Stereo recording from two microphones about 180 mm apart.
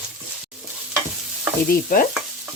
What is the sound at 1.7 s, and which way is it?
Stir, 50° left (ahead or behind).